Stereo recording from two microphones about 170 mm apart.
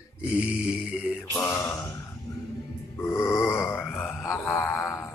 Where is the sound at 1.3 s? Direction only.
15° left (ahead or behind).